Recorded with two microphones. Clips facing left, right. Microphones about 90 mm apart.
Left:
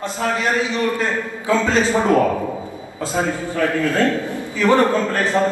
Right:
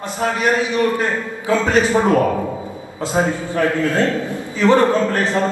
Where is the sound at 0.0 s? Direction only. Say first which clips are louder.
Right 2 dB; 20° right (ahead or behind).